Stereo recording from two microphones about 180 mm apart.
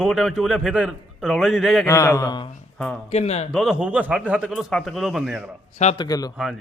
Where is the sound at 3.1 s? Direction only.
35° left (ahead or behind).